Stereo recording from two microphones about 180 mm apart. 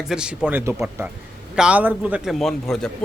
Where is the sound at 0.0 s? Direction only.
5° right (ahead or behind).